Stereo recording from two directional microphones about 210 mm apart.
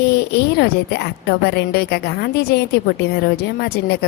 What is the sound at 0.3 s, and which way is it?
A woman's voice, 50° left (ahead or behind).